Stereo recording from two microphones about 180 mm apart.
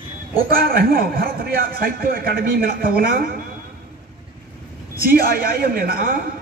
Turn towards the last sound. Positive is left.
turn(degrees=-55)  # may be behind; listen again after turning